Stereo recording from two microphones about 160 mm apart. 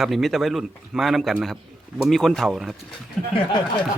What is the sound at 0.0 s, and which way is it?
A man's voice, centre (ahead or behind).